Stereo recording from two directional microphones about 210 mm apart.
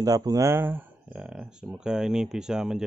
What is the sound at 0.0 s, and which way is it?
Speech, 15° right (ahead or behind).